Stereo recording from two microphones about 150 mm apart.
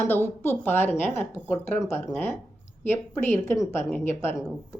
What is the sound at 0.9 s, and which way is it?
Speech, 50° left (ahead or behind).